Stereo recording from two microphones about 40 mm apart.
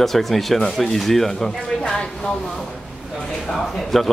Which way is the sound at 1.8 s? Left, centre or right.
Left.